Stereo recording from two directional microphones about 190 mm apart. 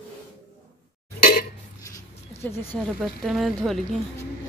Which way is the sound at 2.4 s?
15° left (ahead or behind).